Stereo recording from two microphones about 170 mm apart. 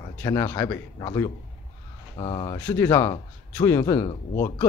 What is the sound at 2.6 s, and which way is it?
Speech, 15° left (ahead or behind).